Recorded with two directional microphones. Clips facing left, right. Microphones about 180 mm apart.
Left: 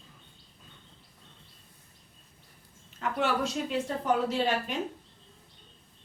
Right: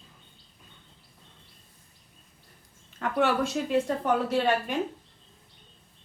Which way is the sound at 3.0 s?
55° right (ahead or behind).